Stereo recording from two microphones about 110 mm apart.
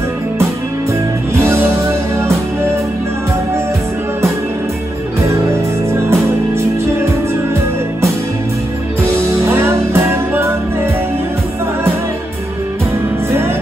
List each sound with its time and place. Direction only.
1.3 s music: 25° right (ahead or behind)
9.0 s music: 25° right (ahead or behind)